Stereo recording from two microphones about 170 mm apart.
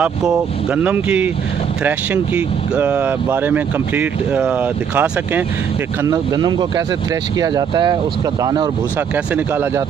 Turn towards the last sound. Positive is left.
turn(degrees=-25)  # may be behind; listen again after turning